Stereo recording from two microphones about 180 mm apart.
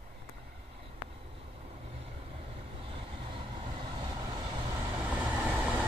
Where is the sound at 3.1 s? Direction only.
30° right (ahead or behind).